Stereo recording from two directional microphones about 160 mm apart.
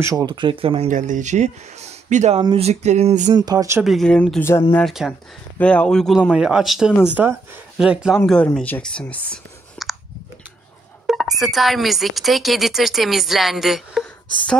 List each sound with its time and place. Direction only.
0.0 s speech: 20° right (ahead or behind)
0.8 s speech: 55° right (ahead or behind)
3.3 s speech: 25° right (ahead or behind)
3.8 s a woman's voice: centre (ahead or behind)
4.7 s a woman's voice: centre (ahead or behind)
8.5 s speech: 10° left (ahead or behind)
9.8 s clicking: centre (ahead or behind)
11.1 s a woman's voice: centre (ahead or behind)